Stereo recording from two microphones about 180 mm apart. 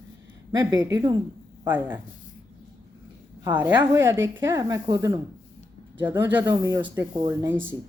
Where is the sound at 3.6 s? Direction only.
15° right (ahead or behind).